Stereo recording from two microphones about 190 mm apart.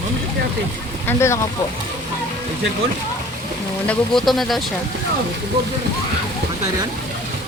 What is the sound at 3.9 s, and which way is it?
Speech, centre (ahead or behind).